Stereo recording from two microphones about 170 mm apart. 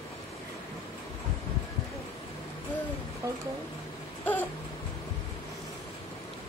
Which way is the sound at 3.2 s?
15° right (ahead or behind).